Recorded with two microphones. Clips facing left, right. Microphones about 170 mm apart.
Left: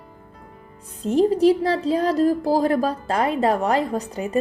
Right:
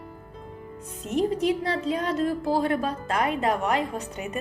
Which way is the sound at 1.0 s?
30° left (ahead or behind).